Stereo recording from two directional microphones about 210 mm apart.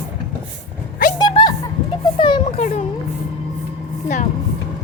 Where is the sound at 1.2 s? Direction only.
20° left (ahead or behind).